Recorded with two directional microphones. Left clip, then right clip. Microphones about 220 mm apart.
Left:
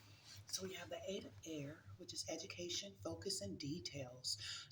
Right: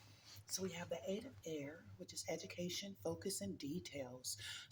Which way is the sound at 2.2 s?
45° right (ahead or behind).